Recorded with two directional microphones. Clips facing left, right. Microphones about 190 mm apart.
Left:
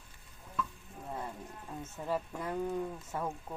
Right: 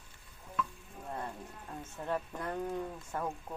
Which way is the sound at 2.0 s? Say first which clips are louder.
Left 1 dB; 5° left (ahead or behind).